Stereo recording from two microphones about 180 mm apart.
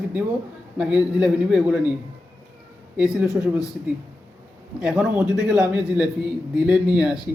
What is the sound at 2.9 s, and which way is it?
Speech, 5° right (ahead or behind).